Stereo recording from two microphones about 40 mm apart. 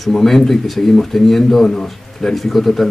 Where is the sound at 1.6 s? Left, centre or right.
Left.